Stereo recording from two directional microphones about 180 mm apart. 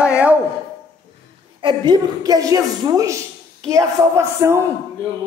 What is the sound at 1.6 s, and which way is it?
A woman's voice, 25° right (ahead or behind).